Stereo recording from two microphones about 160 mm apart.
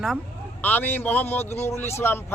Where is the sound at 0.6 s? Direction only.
10° left (ahead or behind).